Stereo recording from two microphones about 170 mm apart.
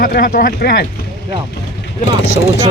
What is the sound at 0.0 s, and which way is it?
Speech, 60° left (ahead or behind).